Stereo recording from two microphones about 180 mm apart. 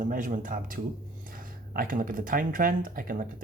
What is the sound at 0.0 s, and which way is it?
Speech, 45° right (ahead or behind).